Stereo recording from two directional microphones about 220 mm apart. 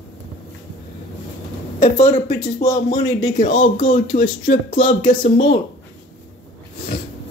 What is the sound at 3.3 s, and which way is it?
Speech, 35° left (ahead or behind).